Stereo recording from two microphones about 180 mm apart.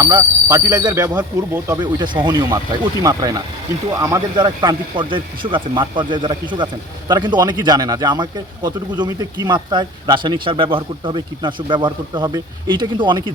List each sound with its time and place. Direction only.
0.0 s a man's voice: 20° right (ahead or behind)